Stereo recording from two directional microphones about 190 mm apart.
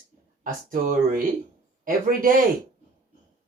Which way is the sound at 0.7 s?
45° right (ahead or behind).